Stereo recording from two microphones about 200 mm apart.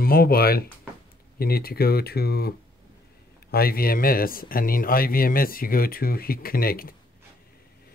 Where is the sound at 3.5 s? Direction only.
50° left (ahead or behind).